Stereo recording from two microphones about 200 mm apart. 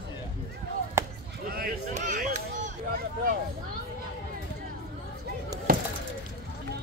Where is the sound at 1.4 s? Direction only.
45° right (ahead or behind).